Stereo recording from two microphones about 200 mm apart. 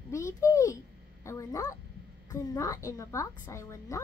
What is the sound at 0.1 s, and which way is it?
Babbling, 15° left (ahead or behind).